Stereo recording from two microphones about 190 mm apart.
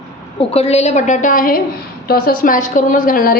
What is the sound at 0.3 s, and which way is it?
A woman's voice, 35° left (ahead or behind).